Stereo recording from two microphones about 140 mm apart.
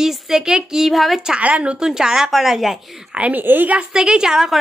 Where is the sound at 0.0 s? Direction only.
5° right (ahead or behind).